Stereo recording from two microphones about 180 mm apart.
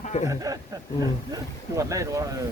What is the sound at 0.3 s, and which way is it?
A man's voice, 20° right (ahead or behind).